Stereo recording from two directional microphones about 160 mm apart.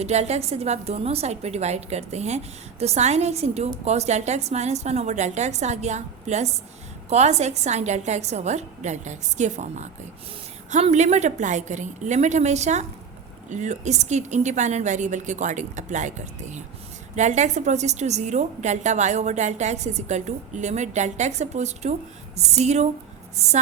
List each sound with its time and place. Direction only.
0.0 s a woman's voice: 45° right (ahead or behind)